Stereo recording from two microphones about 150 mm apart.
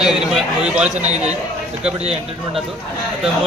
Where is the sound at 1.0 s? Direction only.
50° right (ahead or behind).